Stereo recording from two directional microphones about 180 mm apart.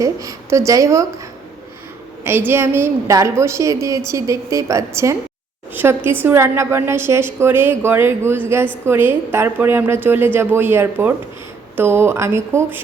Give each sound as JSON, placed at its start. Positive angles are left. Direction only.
{"t": 0.0, "sound": "a woman's voice", "side_deg": -20}
{"t": 2.2, "sound": "a woman's voice", "side_deg": -10}